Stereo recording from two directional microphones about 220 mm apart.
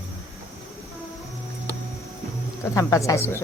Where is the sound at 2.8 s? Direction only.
15° left (ahead or behind).